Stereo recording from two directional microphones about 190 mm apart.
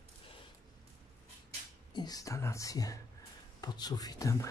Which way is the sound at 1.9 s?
20° left (ahead or behind).